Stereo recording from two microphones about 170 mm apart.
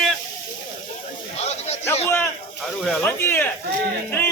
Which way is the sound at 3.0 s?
15° left (ahead or behind).